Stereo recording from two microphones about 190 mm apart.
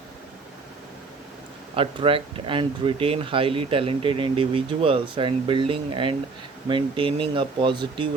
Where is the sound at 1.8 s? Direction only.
30° right (ahead or behind).